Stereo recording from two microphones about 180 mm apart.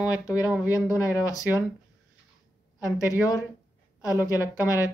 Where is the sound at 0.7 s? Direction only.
20° left (ahead or behind).